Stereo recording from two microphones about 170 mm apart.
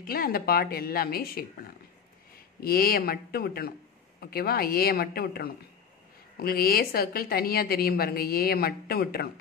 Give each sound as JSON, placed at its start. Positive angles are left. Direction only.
{"t": 0.0, "sound": "a woman's voice", "side_deg": 60}
{"t": 2.6, "sound": "a woman's voice", "side_deg": 60}